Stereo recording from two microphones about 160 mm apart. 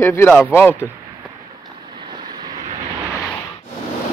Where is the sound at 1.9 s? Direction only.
30° right (ahead or behind).